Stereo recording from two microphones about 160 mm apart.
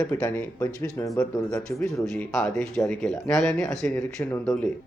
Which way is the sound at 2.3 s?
Centre (ahead or behind).